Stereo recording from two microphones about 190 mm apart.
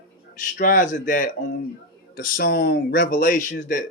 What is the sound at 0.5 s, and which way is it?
Speech, 45° left (ahead or behind).